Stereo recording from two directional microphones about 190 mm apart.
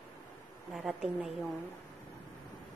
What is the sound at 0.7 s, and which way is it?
Speech, centre (ahead or behind).